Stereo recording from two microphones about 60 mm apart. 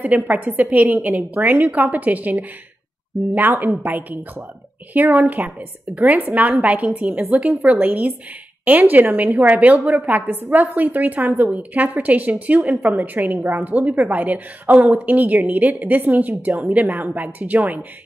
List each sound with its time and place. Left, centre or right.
0.0 s a woman's voice: right